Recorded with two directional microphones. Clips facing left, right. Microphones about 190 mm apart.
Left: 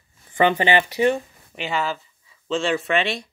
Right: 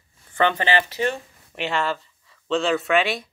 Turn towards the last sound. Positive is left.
turn(degrees=0)  # may be behind; listen again after turning